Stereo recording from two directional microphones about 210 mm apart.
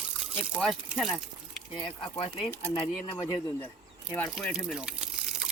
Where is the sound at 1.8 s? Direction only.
25° left (ahead or behind).